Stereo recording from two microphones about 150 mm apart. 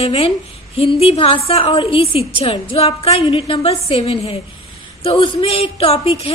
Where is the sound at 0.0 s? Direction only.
40° left (ahead or behind).